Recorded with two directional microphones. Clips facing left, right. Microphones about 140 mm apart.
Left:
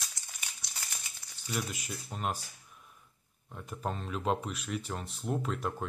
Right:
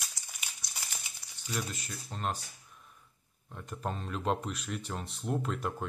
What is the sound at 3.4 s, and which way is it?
Speech, 5° left (ahead or behind).